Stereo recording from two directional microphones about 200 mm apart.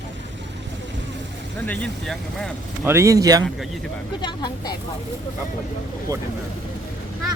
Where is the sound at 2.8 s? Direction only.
15° right (ahead or behind).